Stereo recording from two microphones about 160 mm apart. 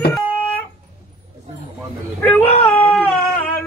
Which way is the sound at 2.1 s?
10° left (ahead or behind).